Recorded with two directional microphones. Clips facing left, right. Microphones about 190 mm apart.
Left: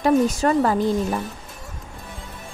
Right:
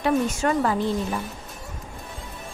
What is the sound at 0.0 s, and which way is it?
Speech, 35° left (ahead or behind).